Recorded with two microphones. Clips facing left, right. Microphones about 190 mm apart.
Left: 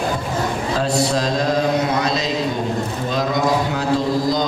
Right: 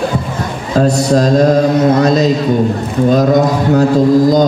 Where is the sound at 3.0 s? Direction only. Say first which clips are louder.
Right 10 dB; 50° right (ahead or behind).